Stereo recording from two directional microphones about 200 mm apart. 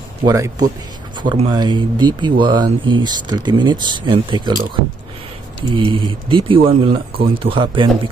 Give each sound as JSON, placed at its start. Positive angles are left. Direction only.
{"t": 0.2, "sound": "speech", "side_deg": -20}
{"t": 5.7, "sound": "speech", "side_deg": -25}